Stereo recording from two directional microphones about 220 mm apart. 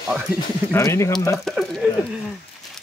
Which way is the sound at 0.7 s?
15° left (ahead or behind).